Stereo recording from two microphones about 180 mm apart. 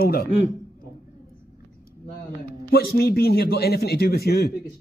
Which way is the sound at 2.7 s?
60° left (ahead or behind).